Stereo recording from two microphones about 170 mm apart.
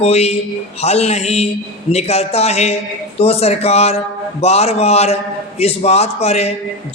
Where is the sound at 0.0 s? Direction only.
40° left (ahead or behind).